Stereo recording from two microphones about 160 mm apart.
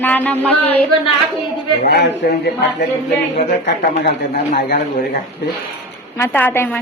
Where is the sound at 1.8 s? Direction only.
80° left.